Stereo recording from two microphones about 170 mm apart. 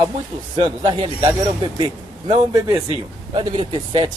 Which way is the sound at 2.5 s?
20° right (ahead or behind).